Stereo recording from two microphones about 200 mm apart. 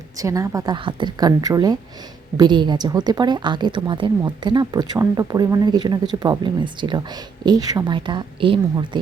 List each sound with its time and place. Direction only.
0.2 s a woman's voice: 15° right (ahead or behind)